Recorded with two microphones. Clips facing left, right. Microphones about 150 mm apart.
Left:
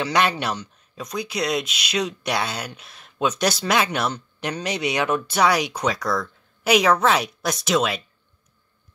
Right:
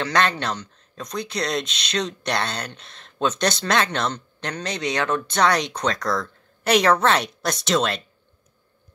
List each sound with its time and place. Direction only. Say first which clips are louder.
0.0 s speech: left 1 dB; 10° left (ahead or behind)